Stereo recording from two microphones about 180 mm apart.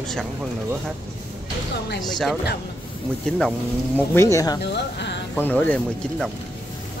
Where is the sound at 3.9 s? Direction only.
15° left (ahead or behind).